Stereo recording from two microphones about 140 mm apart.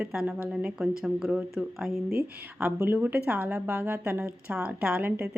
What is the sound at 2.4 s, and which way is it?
A woman's voice, 15° right (ahead or behind).